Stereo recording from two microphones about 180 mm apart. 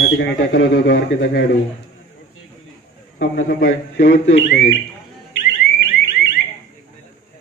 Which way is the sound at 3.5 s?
90° left.